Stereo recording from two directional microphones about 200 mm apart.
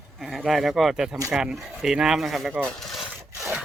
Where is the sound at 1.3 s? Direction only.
Centre (ahead or behind).